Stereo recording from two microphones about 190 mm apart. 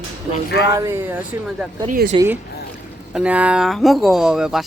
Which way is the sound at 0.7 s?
15° right (ahead or behind).